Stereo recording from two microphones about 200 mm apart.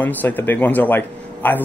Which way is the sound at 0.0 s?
10° left (ahead or behind).